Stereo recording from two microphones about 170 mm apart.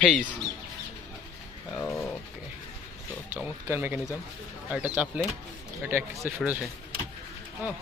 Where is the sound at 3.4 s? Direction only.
10° right (ahead or behind).